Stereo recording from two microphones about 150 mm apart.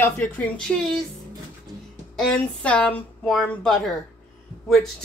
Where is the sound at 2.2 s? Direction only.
10° left (ahead or behind).